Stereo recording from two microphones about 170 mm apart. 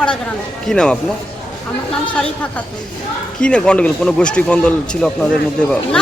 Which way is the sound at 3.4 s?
5° left (ahead or behind).